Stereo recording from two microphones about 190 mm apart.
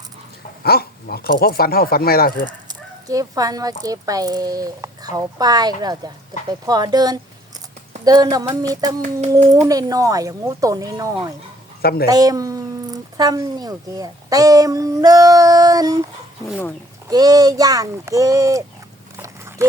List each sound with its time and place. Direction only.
0.6 s speech: 55° left (ahead or behind)
2.6 s speech: 20° right (ahead or behind)
11.8 s speech: 55° left (ahead or behind)
12.0 s speech: 20° right (ahead or behind)
17.1 s speech: 20° right (ahead or behind)
19.1 s dog: 15° right (ahead or behind)